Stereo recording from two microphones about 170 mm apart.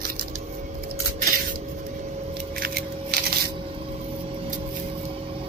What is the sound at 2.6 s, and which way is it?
Scissors, 65° right (ahead or behind).